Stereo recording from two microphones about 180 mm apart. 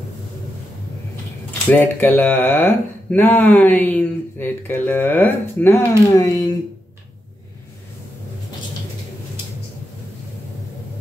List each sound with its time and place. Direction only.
1.7 s speech: 10° left (ahead or behind)